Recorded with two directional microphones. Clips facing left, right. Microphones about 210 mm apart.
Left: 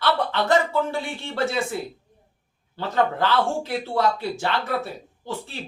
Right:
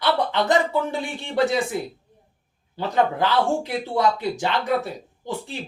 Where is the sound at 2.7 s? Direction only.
15° right (ahead or behind).